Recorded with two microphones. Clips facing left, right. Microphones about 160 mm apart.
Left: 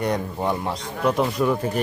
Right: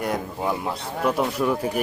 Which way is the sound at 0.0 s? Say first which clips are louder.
Left 2 dB; 5° right (ahead or behind).